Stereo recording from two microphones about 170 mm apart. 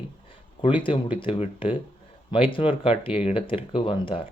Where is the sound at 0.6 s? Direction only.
30° left (ahead or behind).